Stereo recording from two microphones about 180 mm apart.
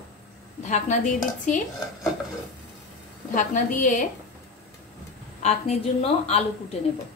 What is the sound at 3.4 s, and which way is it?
Speech, 45° left (ahead or behind).